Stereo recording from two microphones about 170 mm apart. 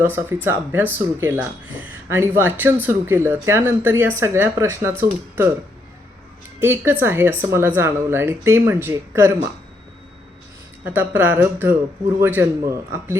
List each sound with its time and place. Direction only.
0.0 s speech: 10° right (ahead or behind)
6.6 s speech: 15° right (ahead or behind)
10.8 s speech: 10° right (ahead or behind)